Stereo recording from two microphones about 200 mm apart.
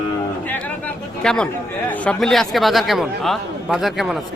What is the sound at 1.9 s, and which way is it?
Speech, 5° left (ahead or behind).